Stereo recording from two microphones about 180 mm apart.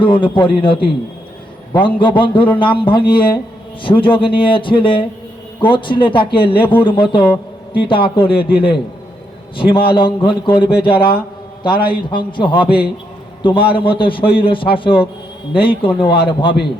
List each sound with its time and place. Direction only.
0.0 s a man's voice: 30° left (ahead or behind)